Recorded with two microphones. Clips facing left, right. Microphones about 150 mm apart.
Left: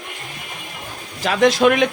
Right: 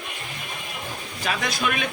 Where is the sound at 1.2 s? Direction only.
80° left.